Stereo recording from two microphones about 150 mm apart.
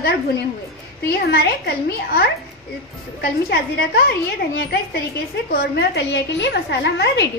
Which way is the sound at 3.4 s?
90° left.